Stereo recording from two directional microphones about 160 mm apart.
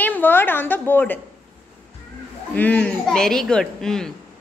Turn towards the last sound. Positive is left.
turn(degrees=5)  # may be behind; listen again after turning